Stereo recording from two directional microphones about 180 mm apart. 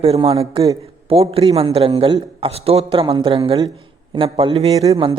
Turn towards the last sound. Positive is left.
turn(degrees=-30)  # may be behind; listen again after turning